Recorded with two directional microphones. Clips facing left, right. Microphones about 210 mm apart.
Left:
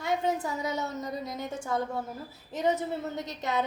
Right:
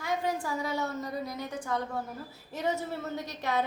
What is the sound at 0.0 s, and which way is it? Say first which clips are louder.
A woman's voice: left 3 dB; 20° left (ahead or behind).